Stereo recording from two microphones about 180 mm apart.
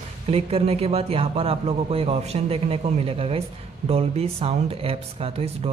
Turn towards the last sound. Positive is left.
turn(degrees=-35)  # may be behind; listen again after turning